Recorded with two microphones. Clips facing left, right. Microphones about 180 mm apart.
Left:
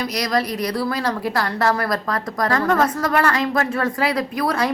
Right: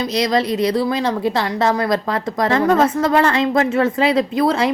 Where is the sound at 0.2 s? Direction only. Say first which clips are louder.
Right 6 dB; 25° right (ahead or behind).